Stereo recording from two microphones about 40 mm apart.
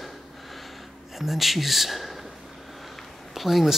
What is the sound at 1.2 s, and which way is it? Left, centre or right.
Speech, centre.